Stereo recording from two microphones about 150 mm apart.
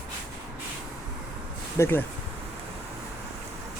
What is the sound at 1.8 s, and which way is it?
Insect, 15° left (ahead or behind).